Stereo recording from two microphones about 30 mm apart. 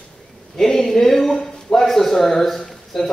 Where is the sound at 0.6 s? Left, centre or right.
Centre.